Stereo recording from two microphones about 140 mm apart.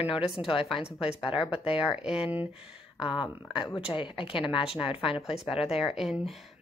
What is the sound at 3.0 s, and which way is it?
A woman's voice, 35° left (ahead or behind).